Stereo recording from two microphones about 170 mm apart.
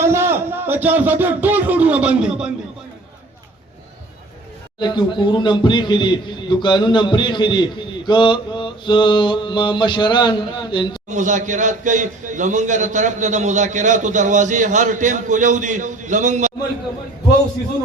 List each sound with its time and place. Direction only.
0.0 s speech: 15° right (ahead or behind)
4.8 s a man's voice: 25° left (ahead or behind)
11.1 s a man's voice: 45° right (ahead or behind)